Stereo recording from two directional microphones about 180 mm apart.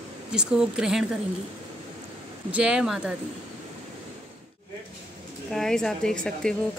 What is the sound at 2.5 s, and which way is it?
Speech, 5° right (ahead or behind).